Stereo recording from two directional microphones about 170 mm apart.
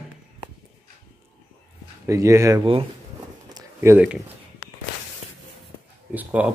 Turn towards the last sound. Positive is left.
turn(degrees=-10)  # may be behind; listen again after turning